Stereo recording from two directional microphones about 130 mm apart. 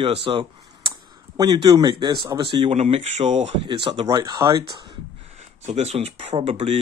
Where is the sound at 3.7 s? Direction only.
40° right (ahead or behind).